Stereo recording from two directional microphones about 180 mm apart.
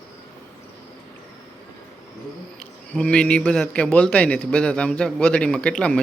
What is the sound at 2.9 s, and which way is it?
A man's voice, 5° left (ahead or behind).